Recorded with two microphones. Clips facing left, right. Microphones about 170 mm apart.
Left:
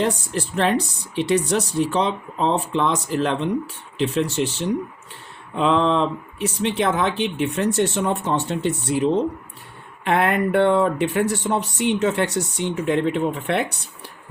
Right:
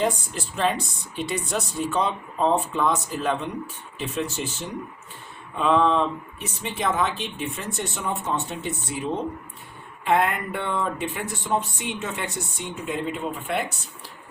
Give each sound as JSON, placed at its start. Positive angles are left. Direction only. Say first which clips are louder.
{"t": 0.0, "sound": "speech", "louder": "left 3 dB", "side_deg": 65}